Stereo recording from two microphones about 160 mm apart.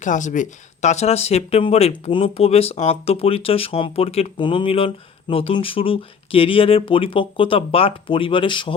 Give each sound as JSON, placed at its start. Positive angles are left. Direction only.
{"t": 0.0, "sound": "speech", "side_deg": 50}